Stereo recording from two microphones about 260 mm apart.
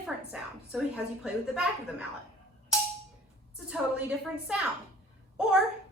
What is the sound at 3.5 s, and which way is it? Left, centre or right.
A woman's voice, centre.